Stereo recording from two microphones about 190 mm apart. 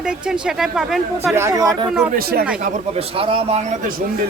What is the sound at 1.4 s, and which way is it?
Speech, 15° right (ahead or behind).